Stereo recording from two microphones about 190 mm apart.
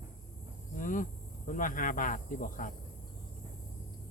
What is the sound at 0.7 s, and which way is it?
Speech, 45° left (ahead or behind).